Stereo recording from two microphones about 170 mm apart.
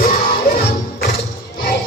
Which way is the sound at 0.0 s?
60° left (ahead or behind).